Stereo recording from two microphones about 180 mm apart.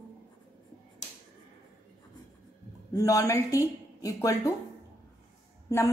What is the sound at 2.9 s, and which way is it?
Speech, 20° left (ahead or behind).